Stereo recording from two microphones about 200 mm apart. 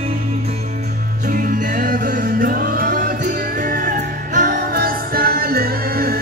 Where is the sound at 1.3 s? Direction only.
40° right (ahead or behind).